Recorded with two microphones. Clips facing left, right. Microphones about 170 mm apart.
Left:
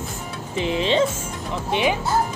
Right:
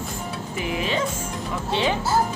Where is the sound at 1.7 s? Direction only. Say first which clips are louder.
Left 2 dB; 15° left (ahead or behind).